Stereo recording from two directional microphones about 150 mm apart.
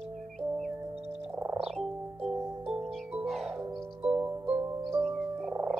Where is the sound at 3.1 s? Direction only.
Centre (ahead or behind).